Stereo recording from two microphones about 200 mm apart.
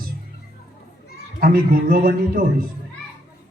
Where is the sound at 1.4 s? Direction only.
45° right (ahead or behind).